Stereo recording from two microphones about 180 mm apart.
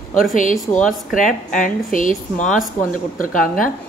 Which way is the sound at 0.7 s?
45° left (ahead or behind).